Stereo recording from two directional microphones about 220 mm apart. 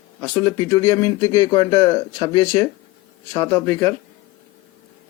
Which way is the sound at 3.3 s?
20° left (ahead or behind).